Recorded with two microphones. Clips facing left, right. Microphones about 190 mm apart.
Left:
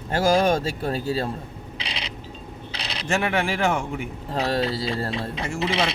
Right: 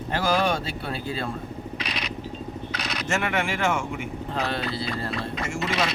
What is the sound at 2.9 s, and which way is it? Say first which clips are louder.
Speech: left 3 dB; 30° left (ahead or behind).